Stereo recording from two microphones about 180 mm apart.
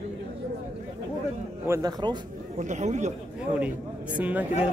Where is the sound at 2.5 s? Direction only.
40° right (ahead or behind).